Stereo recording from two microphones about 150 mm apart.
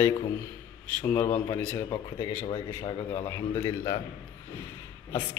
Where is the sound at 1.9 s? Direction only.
30° left (ahead or behind).